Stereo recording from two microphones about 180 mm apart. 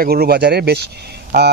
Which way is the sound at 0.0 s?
55° right (ahead or behind).